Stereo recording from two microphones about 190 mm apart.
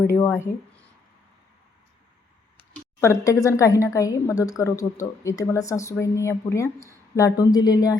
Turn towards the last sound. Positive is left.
turn(degrees=20)  # may be behind; listen again after turning